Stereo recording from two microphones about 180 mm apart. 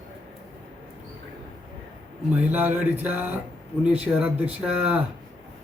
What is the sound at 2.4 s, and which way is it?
Speech, 10° right (ahead or behind).